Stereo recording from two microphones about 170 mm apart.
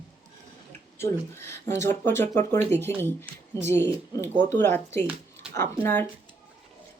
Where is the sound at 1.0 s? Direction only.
15° left (ahead or behind).